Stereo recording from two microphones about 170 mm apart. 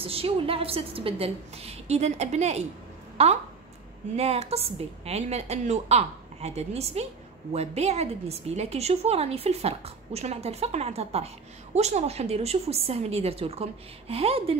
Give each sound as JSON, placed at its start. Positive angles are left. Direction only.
{"t": 0.0, "sound": "a woman's voice", "side_deg": -35}